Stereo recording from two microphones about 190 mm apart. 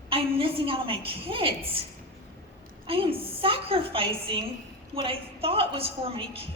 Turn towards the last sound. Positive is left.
turn(degrees=-30)  # may be behind; listen again after turning